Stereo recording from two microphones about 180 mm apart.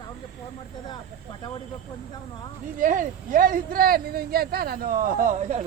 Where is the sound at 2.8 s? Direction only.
45° right (ahead or behind).